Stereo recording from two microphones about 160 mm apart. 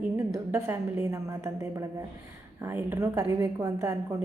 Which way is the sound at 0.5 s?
20° right (ahead or behind).